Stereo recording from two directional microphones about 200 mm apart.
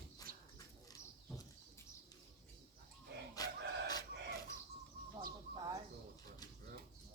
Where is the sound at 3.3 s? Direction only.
20° left (ahead or behind).